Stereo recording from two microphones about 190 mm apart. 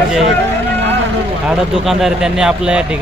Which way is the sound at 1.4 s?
Centre (ahead or behind).